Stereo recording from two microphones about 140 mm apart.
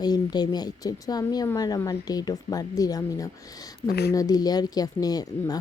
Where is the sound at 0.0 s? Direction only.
30° left (ahead or behind).